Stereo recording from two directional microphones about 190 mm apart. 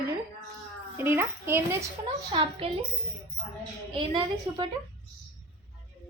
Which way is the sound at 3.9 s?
25° right (ahead or behind).